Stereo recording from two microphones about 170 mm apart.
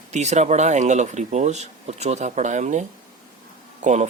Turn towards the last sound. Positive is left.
turn(degrees=-45)  # may be behind; listen again after turning